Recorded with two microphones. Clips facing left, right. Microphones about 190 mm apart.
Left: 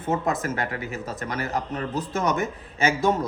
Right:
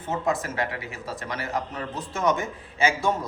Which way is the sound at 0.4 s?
45° left (ahead or behind).